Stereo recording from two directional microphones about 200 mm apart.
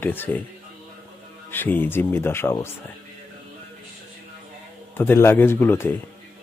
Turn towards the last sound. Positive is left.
turn(degrees=10)  # may be behind; listen again after turning